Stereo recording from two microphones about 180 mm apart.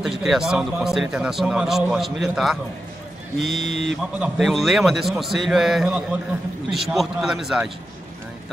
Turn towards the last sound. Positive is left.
turn(degrees=0)  # may be behind; listen again after turning